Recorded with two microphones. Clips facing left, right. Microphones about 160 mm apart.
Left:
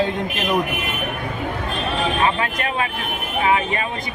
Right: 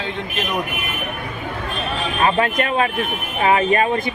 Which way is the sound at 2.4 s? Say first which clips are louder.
Right 5 dB; 40° right (ahead or behind).